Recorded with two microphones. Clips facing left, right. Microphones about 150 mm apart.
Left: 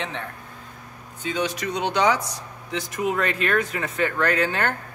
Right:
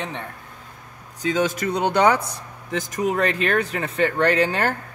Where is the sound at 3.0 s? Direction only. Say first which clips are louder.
Right 2 dB; 30° right (ahead or behind).